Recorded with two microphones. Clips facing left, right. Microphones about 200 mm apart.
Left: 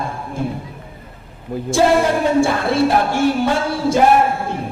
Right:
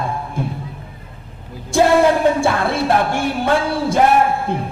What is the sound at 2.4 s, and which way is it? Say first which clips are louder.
A woman's voice: left 1 dB; 55° right (ahead or behind).